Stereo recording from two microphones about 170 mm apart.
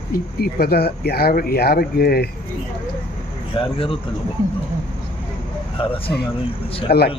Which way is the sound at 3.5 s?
30° left (ahead or behind).